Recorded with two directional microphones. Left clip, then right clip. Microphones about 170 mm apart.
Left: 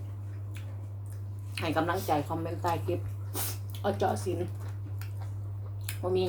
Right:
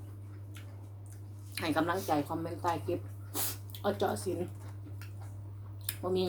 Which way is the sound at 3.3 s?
20° right (ahead or behind).